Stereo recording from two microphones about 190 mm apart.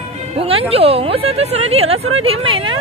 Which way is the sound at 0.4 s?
30° right (ahead or behind).